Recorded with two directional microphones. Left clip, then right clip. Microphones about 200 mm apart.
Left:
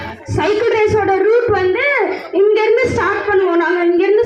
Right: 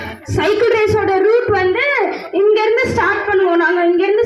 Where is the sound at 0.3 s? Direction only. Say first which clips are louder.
Right 1 dB; 60° right (ahead or behind).